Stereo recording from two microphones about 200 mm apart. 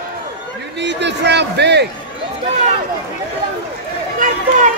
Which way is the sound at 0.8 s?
60° right (ahead or behind).